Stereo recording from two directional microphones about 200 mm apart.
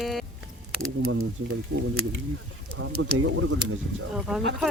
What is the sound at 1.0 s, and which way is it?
Speech, 90° right.